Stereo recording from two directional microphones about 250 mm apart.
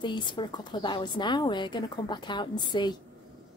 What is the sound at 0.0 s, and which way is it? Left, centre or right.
A woman's voice, centre.